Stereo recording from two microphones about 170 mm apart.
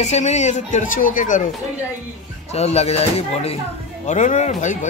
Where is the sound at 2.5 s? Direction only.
40° left (ahead or behind).